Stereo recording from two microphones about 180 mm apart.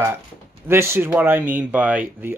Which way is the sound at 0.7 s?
15° right (ahead or behind).